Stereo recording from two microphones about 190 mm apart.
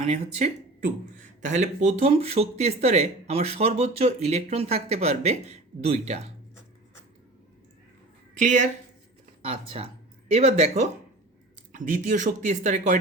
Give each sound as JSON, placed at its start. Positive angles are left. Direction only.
{"t": 0.0, "sound": "speech", "side_deg": -35}
{"t": 8.4, "sound": "speech", "side_deg": -40}